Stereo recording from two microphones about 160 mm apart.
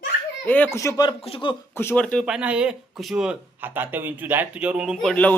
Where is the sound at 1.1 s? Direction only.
35° left (ahead or behind).